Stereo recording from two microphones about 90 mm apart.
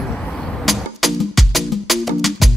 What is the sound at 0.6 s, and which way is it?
Music, centre (ahead or behind).